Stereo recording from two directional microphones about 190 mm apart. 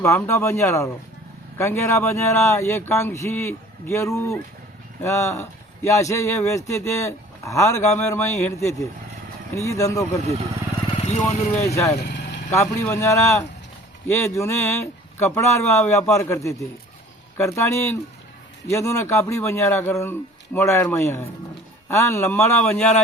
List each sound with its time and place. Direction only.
0.0 s speech: 15° left (ahead or behind)
10.9 s speech: 35° left (ahead or behind)
12.5 s speech: 15° left (ahead or behind)